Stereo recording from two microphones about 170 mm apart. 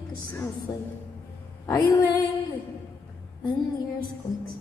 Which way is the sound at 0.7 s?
15° left (ahead or behind).